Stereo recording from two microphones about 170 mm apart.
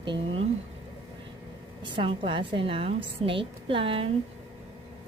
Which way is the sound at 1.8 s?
30° right (ahead or behind).